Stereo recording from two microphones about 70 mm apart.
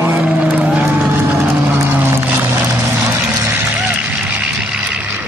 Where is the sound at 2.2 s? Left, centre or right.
Right.